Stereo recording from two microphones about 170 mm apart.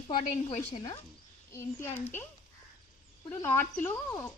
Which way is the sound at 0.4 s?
40° left (ahead or behind).